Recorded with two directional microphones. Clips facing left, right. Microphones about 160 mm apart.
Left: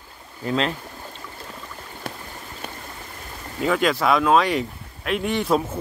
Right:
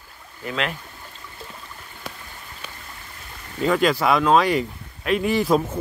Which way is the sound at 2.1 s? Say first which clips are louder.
Left 3 dB; 60° left (ahead or behind).